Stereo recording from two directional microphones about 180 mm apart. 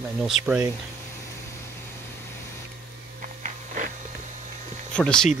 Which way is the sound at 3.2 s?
45° right (ahead or behind).